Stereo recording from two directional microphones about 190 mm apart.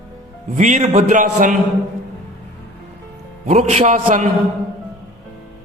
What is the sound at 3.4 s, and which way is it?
Speech, 35° right (ahead or behind).